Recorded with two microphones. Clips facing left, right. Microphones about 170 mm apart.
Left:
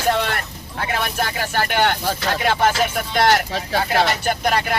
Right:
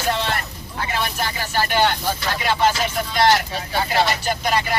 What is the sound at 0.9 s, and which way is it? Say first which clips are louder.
Speech: left 2 dB; 55° left (ahead or behind).